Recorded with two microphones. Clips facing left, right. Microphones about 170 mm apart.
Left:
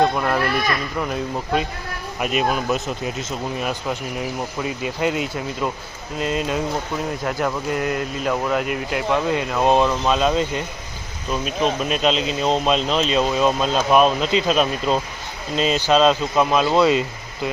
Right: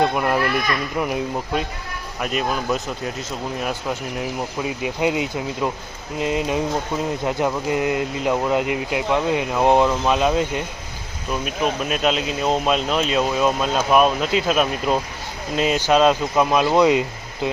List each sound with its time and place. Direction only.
0.0 s speech: 10° right (ahead or behind)
2.2 s speech: 10° left (ahead or behind)
4.9 s speech: 15° right (ahead or behind)